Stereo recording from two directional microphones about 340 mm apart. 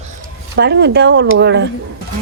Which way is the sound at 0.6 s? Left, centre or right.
Right.